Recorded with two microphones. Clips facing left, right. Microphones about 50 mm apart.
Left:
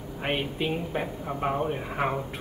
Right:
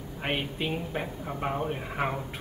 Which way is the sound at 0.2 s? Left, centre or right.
Centre.